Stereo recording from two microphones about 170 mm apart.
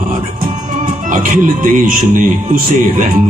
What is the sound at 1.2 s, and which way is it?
Speech, 55° right (ahead or behind).